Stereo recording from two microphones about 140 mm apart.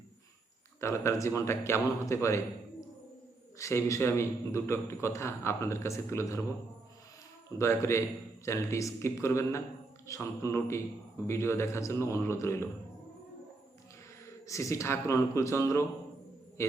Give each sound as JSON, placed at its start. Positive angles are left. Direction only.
{"t": 0.8, "sound": "a man's voice", "side_deg": 20}
{"t": 3.6, "sound": "a man's voice", "side_deg": 20}
{"t": 7.6, "sound": "a man's voice", "side_deg": 20}
{"t": 14.4, "sound": "a man's voice", "side_deg": 20}